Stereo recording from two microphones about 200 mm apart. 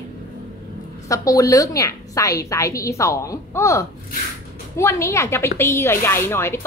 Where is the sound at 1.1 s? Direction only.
15° left (ahead or behind).